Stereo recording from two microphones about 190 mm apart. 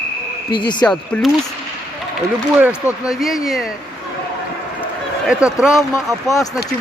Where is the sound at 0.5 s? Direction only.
25° left (ahead or behind).